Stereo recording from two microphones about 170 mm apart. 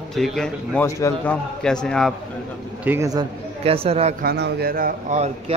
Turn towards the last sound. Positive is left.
turn(degrees=-60)  # may be behind; listen again after turning